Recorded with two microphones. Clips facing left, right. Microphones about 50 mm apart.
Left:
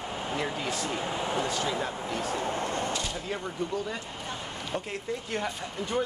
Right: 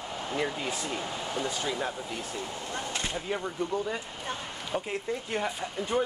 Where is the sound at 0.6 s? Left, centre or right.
Centre.